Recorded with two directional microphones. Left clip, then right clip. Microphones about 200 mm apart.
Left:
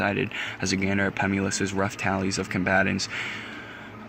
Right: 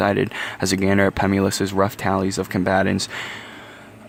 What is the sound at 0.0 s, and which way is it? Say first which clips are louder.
Speech: right 6 dB; 45° right (ahead or behind).